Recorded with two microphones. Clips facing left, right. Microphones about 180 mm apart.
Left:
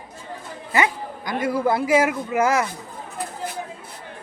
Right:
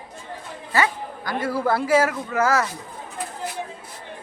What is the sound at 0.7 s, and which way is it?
A man's voice, 20° left (ahead or behind).